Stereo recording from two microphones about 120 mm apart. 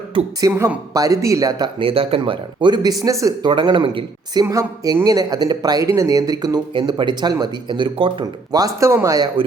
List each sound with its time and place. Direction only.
0.3 s speech: 25° right (ahead or behind)
1.8 s speech: 50° right (ahead or behind); by 3.3 s 25° right (ahead or behind)
3.4 s speech: 40° right (ahead or behind)
4.4 s speech: 30° right (ahead or behind); by 8.3 s 45° right (ahead or behind)
8.5 s speech: 25° right (ahead or behind)